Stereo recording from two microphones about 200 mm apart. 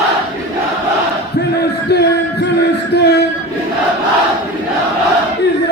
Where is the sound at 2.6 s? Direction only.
55° left (ahead or behind).